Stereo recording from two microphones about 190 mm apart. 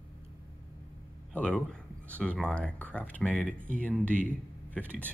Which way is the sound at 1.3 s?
5° left (ahead or behind).